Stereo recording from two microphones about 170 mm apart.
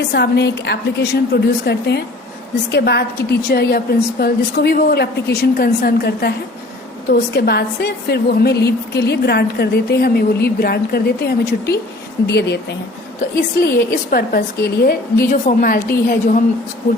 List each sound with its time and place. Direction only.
0.1 s a woman's voice: 75° left (ahead or behind)
12.3 s speech: 80° left
13.3 s a woman's voice: 65° left (ahead or behind)
15.2 s a woman's voice: 55° left (ahead or behind)